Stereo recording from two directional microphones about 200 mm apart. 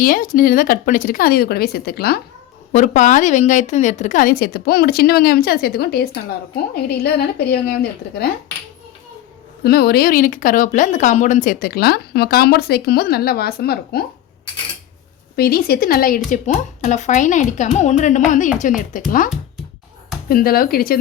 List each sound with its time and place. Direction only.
0.0 s speech: 45° left (ahead or behind)
2.7 s speech: 40° left (ahead or behind)
9.6 s speech: 50° left (ahead or behind)
15.4 s speech: 50° left (ahead or behind)
20.2 s speech: 45° left (ahead or behind)